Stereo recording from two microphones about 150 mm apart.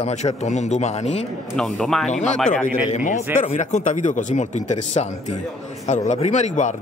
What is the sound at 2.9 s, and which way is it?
A man's voice, 55° left (ahead or behind).